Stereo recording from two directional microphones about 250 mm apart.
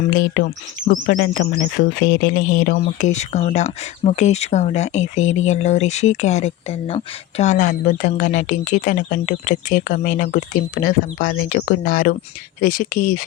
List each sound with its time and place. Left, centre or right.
0.1 s speech: left